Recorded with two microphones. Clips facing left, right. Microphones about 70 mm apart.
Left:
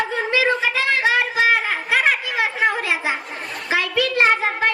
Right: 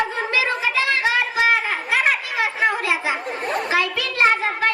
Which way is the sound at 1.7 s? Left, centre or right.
Left.